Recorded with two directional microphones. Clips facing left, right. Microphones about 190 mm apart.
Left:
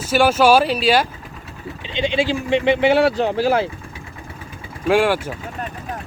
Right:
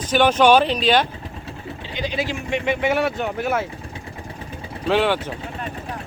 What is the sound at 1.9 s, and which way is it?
Speech, 25° left (ahead or behind).